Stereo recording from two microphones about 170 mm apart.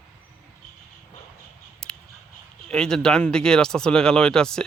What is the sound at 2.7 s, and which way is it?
Speech, 5° left (ahead or behind).